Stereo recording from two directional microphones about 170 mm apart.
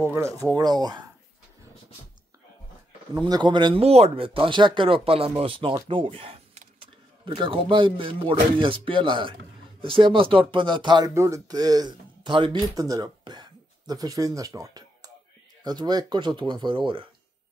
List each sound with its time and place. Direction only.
0.0 s speech: 15° right (ahead or behind)
3.2 s speech: 25° right (ahead or behind)
5.9 s a sound: 30° right (ahead or behind)
7.2 s speech: 30° right (ahead or behind)